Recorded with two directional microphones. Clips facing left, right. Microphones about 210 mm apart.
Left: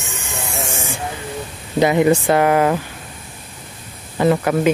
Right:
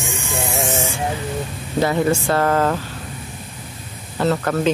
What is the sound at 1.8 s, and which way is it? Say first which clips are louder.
Speech: left 4 dB; 15° left (ahead or behind).